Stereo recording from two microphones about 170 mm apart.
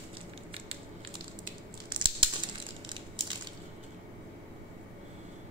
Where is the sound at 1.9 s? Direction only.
30° right (ahead or behind).